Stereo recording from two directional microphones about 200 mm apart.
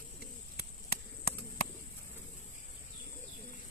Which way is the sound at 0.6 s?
50° left (ahead or behind).